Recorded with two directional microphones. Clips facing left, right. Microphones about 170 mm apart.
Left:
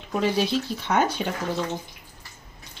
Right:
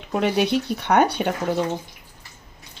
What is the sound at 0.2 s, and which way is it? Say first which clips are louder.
Speech: right 3 dB; 65° right (ahead or behind).